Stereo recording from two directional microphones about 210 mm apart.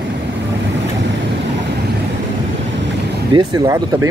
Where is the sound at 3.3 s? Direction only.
15° right (ahead or behind).